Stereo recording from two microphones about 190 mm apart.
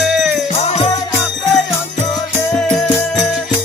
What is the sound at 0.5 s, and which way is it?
Music, 35° left (ahead or behind).